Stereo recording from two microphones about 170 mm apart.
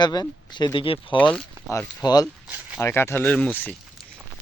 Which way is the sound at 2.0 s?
20° left (ahead or behind).